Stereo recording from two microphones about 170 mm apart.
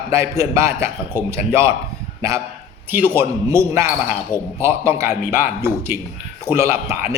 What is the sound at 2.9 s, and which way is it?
Speech, 10° right (ahead or behind).